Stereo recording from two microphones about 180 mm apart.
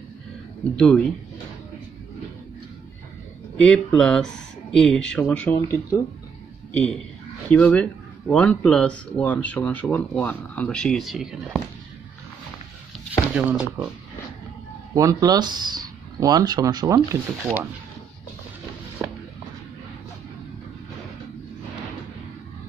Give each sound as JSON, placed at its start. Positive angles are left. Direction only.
{"t": 0.7, "sound": "speech", "side_deg": 5}
{"t": 3.5, "sound": "speech", "side_deg": 5}
{"t": 13.3, "sound": "speech", "side_deg": -5}
{"t": 15.0, "sound": "speech", "side_deg": -20}